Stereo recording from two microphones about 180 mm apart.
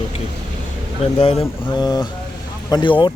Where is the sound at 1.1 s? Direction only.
30° left (ahead or behind).